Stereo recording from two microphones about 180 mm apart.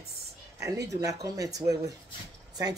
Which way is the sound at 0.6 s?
15° right (ahead or behind).